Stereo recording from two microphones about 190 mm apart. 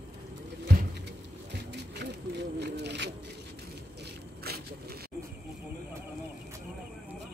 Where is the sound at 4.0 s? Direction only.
55° right (ahead or behind).